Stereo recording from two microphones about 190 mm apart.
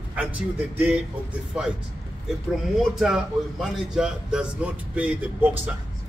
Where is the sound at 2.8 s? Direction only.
Centre (ahead or behind).